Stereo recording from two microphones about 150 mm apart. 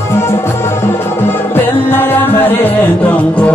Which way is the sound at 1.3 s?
15° left (ahead or behind).